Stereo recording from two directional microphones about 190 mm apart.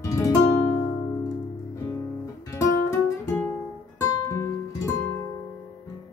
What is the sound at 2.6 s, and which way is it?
Music, 15° left (ahead or behind).